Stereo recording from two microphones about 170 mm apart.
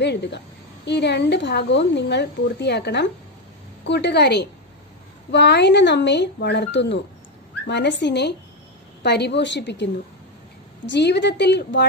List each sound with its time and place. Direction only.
0.0 s a woman's voice: 90° left
10.9 s speech: 90° left